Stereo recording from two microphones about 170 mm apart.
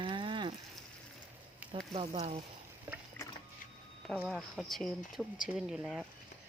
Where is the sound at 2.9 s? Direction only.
10° right (ahead or behind).